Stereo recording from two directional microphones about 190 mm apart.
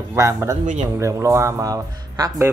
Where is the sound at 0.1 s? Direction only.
15° right (ahead or behind).